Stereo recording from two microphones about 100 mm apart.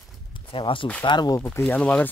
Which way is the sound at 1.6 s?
15° left (ahead or behind).